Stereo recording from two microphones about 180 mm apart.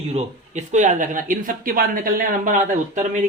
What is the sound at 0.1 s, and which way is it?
Speech, 40° right (ahead or behind).